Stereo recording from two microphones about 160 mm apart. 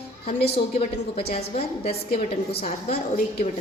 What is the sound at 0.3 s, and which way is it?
Speech, 85° left.